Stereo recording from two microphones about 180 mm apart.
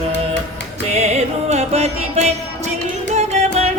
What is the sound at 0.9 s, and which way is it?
Music, 40° right (ahead or behind).